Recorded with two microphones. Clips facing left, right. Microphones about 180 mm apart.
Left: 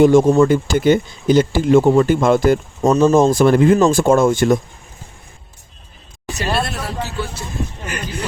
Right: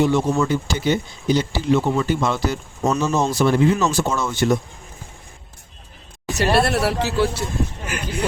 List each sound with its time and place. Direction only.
0.0 s speech: 45° left (ahead or behind)
6.3 s speech: 65° right (ahead or behind); by 7.3 s 80° right
7.4 s speech: 5° right (ahead or behind)